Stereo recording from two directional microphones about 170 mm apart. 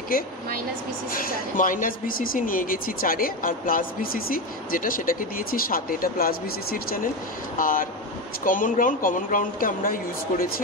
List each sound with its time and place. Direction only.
1.1 s speech: 55° left (ahead or behind)